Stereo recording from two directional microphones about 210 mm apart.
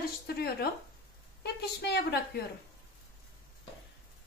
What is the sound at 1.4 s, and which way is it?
A woman's voice, 50° left (ahead or behind).